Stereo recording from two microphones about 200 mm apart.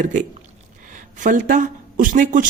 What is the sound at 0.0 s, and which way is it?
Speech, 40° right (ahead or behind).